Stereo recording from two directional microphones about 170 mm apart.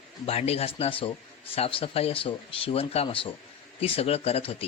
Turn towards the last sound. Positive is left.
turn(degrees=35)  # may be behind; listen again after turning